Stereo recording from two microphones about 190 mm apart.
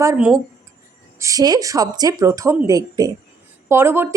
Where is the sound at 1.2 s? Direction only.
20° right (ahead or behind).